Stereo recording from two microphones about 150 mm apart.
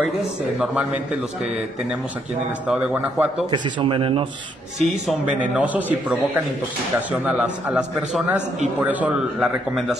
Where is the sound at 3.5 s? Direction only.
30° right (ahead or behind).